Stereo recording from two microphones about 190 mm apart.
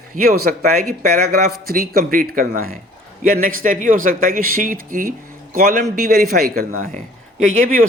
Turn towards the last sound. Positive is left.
turn(degrees=-45)  # may be behind; listen again after turning